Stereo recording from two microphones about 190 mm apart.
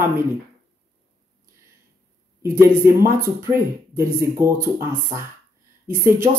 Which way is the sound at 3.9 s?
15° right (ahead or behind).